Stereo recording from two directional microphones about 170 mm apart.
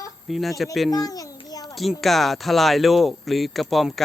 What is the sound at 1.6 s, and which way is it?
Speech, centre (ahead or behind).